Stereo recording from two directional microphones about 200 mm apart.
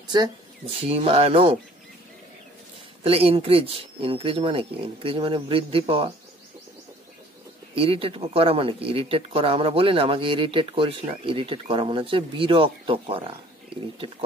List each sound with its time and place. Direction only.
0.1 s speech: 25° right (ahead or behind)
3.0 s speech: 30° right (ahead or behind)
7.7 s speech: 30° right (ahead or behind)